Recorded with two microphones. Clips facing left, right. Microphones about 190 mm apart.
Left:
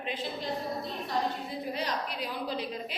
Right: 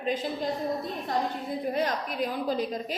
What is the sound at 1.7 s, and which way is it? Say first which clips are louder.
Speech: right 4 dB; 50° right (ahead or behind).